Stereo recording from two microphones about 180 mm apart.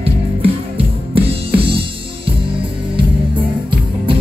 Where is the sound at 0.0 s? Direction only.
30° right (ahead or behind).